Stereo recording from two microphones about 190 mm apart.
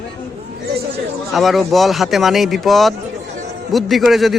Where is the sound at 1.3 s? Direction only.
Centre (ahead or behind).